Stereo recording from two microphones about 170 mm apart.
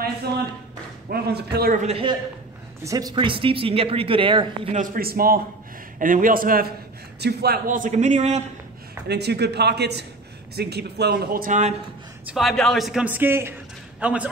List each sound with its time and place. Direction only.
1.1 s speech: 70° right (ahead or behind)
1.8 s speech: 40° right (ahead or behind)
2.8 s speech: 20° right (ahead or behind)
4.7 s a man's voice: 55° right (ahead or behind)
7.2 s a man's voice: 70° right (ahead or behind); by 8.5 s 40° right (ahead or behind)
9.0 s speech: 75° right (ahead or behind); by 11.7 s 50° right (ahead or behind)
12.4 s a man's voice: centre (ahead or behind)